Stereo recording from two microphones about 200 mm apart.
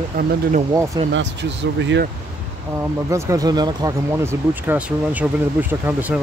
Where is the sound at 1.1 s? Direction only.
65° right (ahead or behind).